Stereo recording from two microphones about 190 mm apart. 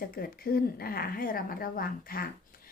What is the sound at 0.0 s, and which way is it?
A woman's voice, 50° left (ahead or behind).